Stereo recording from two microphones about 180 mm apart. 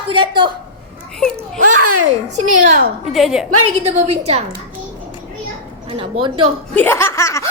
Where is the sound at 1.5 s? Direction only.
45° right (ahead or behind).